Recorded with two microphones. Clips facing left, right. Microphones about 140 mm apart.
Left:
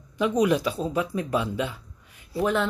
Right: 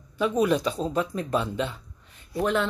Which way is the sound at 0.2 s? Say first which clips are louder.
Left 1 dB; 15° left (ahead or behind).